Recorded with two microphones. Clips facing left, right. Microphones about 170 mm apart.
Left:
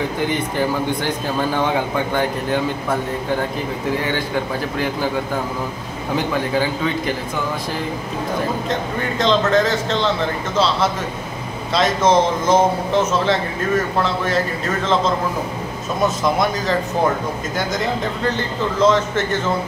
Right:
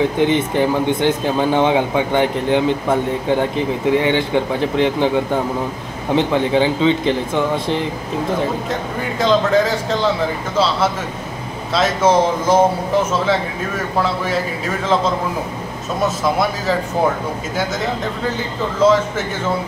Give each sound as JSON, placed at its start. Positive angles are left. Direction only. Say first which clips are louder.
{"t": 0.2, "sound": "speech", "louder": "right 3 dB", "side_deg": -20}
{"t": 6.1, "sound": "speech", "louder": "right 5 dB", "side_deg": -25}
{"t": 9.2, "sound": "speech", "louder": "right 2 dB", "side_deg": -10}
{"t": 11.7, "sound": "speech", "louder": "right 1 dB", "side_deg": -5}
{"t": 13.9, "sound": "speech", "louder": "even", "side_deg": -5}
{"t": 17.6, "sound": "speech", "louder": "even", "side_deg": -5}